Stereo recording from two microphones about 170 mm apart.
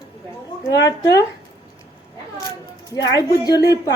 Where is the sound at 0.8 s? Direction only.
20° left (ahead or behind).